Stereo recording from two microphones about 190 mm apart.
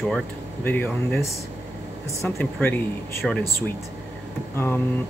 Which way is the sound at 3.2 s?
Centre (ahead or behind).